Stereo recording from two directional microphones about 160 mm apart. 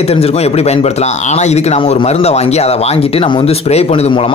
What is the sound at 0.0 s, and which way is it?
Speech, 40° left (ahead or behind).